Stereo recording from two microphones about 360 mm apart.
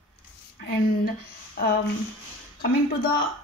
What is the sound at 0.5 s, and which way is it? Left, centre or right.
Speech, left.